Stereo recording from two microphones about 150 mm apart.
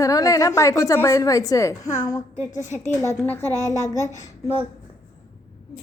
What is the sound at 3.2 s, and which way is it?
Child singing, 15° left (ahead or behind).